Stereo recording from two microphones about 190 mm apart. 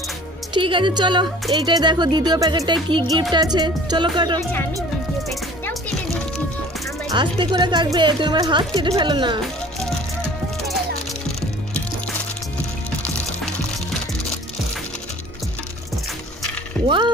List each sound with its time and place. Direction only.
0.5 s music: 25° right (ahead or behind)
7.1 s music: 25° right (ahead or behind)
16.8 s a sound: centre (ahead or behind)